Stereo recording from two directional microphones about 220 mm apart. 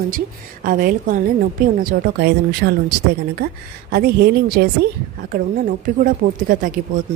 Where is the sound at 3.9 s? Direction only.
45° right (ahead or behind).